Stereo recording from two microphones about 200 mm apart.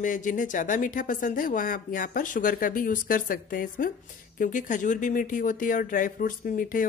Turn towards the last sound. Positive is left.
turn(degrees=45)  # may be behind; listen again after turning